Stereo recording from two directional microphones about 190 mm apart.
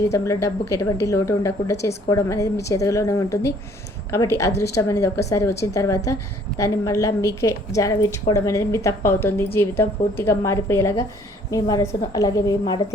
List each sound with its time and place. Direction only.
0.1 s a woman's voice: 15° left (ahead or behind)